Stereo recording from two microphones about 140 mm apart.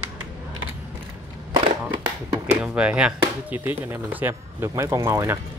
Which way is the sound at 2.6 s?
5° right (ahead or behind).